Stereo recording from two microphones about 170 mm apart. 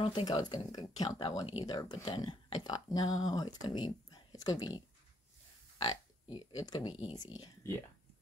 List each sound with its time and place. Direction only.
0.0 s speech: 30° left (ahead or behind)